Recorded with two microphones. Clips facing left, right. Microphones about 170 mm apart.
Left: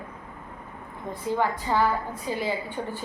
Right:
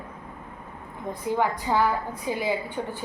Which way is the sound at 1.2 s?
15° right (ahead or behind).